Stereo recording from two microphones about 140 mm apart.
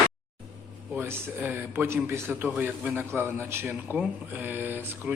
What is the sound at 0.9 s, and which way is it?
A man's voice, 15° right (ahead or behind).